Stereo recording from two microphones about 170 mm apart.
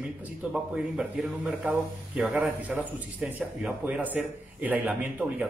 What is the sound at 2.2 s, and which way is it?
A man's voice, 5° right (ahead or behind).